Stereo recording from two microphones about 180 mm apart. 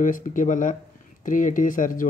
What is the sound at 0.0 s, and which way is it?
Speech, 45° left (ahead or behind).